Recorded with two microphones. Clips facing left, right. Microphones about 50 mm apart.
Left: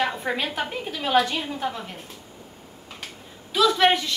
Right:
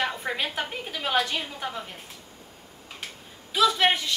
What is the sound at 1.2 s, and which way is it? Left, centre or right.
Speech, centre.